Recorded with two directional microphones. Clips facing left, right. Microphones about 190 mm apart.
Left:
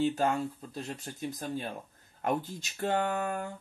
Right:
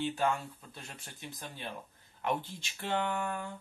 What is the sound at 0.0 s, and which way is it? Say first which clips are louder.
Speech: left 4 dB; 40° left (ahead or behind).